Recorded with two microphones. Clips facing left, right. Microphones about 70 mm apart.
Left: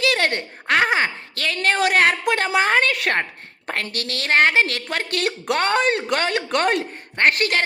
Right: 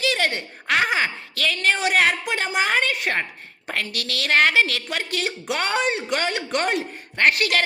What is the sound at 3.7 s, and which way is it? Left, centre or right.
A woman's voice, left.